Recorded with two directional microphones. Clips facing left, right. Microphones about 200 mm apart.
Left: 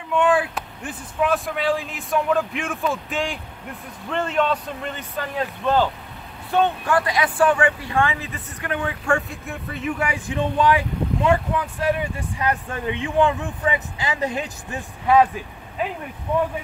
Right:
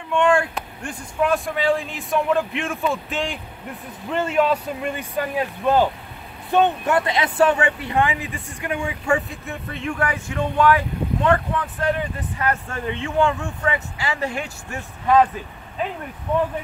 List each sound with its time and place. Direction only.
0.1 s speech: 5° left (ahead or behind)